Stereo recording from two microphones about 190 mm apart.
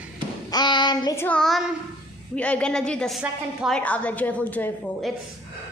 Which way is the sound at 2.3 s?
5° left (ahead or behind).